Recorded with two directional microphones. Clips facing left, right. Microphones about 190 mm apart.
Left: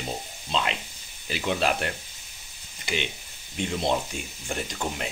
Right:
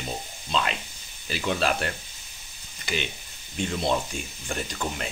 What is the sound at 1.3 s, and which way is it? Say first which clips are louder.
Speech: even; 15° left (ahead or behind).